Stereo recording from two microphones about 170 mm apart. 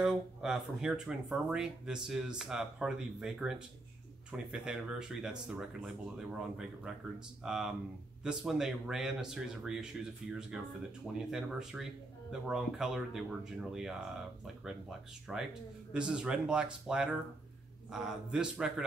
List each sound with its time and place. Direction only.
0.0 s speech: 5° right (ahead or behind)
11.1 s speech: 5° right (ahead or behind)